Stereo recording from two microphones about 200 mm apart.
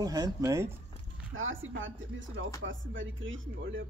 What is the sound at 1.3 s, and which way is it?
Speech, 80° right.